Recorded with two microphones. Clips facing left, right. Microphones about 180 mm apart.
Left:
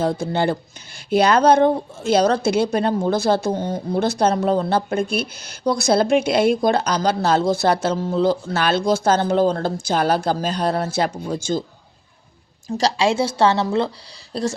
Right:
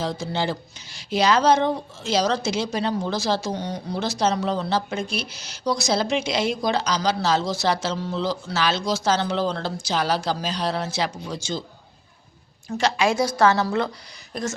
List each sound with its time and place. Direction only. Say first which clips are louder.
0.0 s a woman's voice: left 6 dB; 55° left (ahead or behind)
12.7 s a woman's voice: left 3 dB; 35° left (ahead or behind)